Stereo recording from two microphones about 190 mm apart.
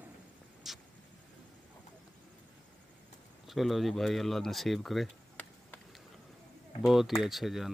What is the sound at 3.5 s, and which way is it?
Speech, centre (ahead or behind).